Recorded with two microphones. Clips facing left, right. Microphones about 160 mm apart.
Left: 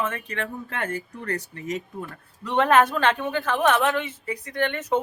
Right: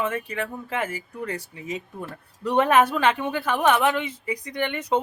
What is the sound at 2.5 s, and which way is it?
Speech, 15° right (ahead or behind).